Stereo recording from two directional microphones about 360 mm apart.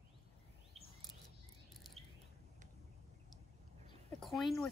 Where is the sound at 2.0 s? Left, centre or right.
Centre.